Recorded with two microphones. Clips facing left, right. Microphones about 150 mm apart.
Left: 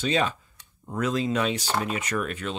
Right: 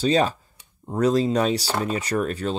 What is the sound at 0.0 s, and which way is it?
Speech, 35° right (ahead or behind).